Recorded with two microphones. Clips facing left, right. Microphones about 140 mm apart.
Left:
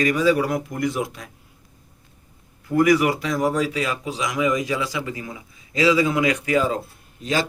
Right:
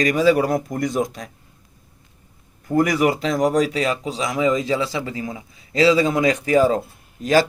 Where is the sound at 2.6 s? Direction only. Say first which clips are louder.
Even; 45° right (ahead or behind).